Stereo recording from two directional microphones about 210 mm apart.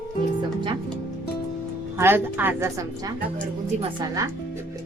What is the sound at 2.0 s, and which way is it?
A woman's voice, 10° right (ahead or behind).